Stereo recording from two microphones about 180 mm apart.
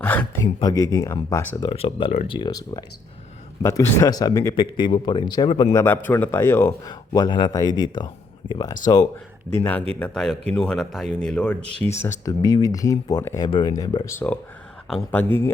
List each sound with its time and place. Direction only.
0.0 s speech: 10° left (ahead or behind)
0.6 s speech: 20° left (ahead or behind)
1.6 s speech: 30° left (ahead or behind)
5.7 s speech: 10° left (ahead or behind)
9.5 s speech: 10° left (ahead or behind)
12.2 s speech: 20° left (ahead or behind)